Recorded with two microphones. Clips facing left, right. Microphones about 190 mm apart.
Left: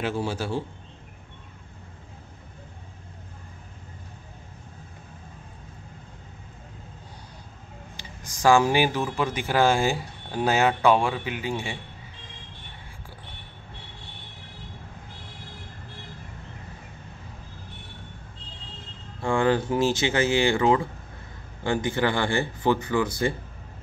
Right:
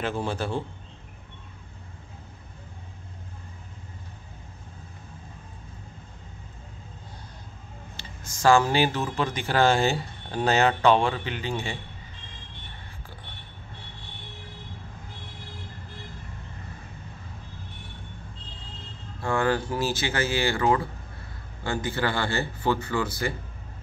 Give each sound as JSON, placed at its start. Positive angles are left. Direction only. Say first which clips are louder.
{"t": 0.0, "sound": "speech", "louder": "left 1 dB", "side_deg": 10}
{"t": 8.0, "sound": "speech", "louder": "left 1 dB", "side_deg": 15}
{"t": 19.2, "sound": "speech", "louder": "left 3 dB", "side_deg": 20}